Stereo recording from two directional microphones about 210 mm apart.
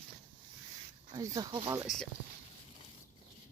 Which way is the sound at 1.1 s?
20° right (ahead or behind).